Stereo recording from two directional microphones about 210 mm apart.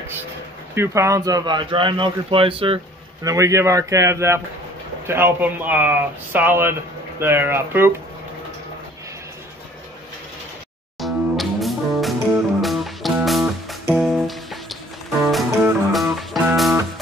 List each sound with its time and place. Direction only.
0.7 s a man's voice: 15° right (ahead or behind)
3.3 s speech: 15° right (ahead or behind)
11.0 s music: centre (ahead or behind)